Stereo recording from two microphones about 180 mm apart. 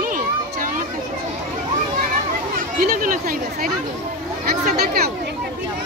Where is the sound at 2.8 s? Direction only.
50° right (ahead or behind).